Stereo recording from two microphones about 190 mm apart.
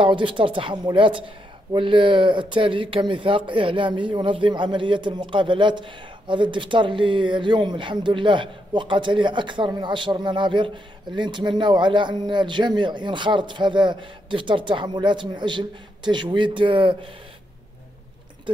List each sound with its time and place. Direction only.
0.0 s speech: 25° right (ahead or behind)